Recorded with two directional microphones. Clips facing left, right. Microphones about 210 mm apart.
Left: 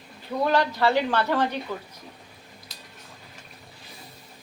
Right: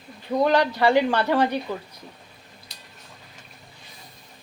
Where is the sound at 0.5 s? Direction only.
15° right (ahead or behind).